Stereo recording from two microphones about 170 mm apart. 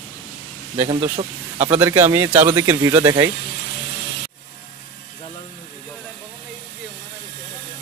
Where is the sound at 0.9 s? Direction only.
30° right (ahead or behind).